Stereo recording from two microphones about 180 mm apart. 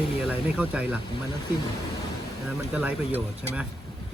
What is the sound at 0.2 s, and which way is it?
Speech, 5° right (ahead or behind).